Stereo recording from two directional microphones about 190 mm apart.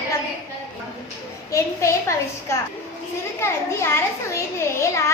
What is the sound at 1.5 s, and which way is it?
A woman's voice, 15° left (ahead or behind).